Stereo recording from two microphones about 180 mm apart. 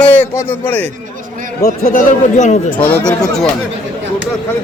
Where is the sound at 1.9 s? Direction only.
45° left (ahead or behind).